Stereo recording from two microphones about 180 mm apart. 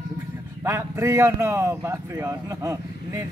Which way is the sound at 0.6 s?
15° right (ahead or behind).